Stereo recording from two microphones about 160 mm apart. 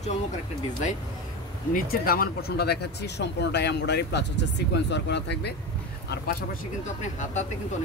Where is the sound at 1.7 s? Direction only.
65° left (ahead or behind); by 5.5 s 90° left.